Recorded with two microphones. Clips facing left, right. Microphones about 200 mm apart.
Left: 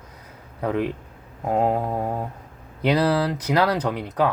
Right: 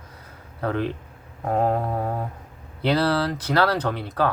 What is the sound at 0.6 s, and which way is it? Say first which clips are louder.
Speech: left 1 dB; 10° left (ahead or behind).